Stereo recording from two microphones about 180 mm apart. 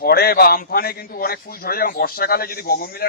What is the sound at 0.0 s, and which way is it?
A man's voice, 55° left (ahead or behind).